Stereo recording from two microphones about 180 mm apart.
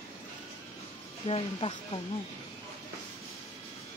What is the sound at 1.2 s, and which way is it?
Speech, 35° left (ahead or behind).